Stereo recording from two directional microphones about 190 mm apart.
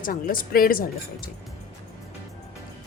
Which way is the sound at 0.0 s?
45° left (ahead or behind).